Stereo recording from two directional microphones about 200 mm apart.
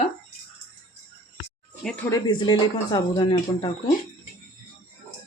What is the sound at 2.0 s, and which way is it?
Speech, 20° left (ahead or behind).